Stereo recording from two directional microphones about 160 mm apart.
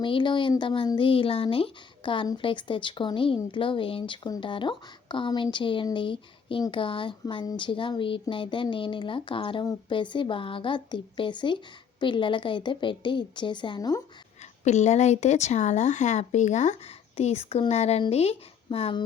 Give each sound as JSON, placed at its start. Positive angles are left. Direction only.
{"t": 0.0, "sound": "speech", "side_deg": 30}
{"t": 14.6, "sound": "speech", "side_deg": 45}